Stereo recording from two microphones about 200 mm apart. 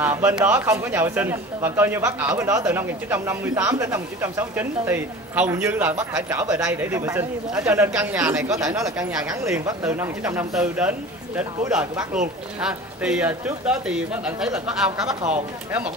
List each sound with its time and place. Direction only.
0.0 s a man's voice: 10° right (ahead or behind)